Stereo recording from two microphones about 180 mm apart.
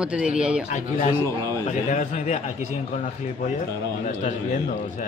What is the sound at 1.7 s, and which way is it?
A man's voice, 40° left (ahead or behind).